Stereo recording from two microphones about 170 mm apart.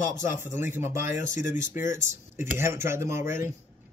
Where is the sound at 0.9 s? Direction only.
50° left (ahead or behind).